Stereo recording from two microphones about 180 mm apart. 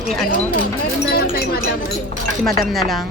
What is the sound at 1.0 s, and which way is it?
Speech, 55° left (ahead or behind).